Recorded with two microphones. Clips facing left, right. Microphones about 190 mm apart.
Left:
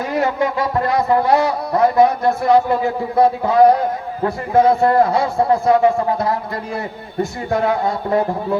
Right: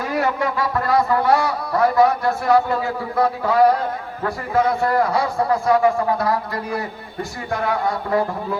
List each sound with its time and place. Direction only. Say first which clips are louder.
0.1 s a man's voice: left 3 dB; 20° left (ahead or behind)